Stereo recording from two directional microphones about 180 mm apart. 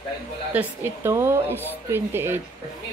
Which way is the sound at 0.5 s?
10° right (ahead or behind).